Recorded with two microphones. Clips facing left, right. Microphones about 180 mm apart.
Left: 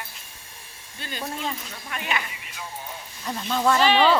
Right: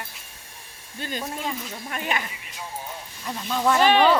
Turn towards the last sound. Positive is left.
turn(degrees=-50)  # may be behind; listen again after turning